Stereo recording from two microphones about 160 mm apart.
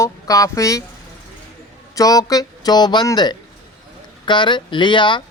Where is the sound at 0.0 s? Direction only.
20° left (ahead or behind).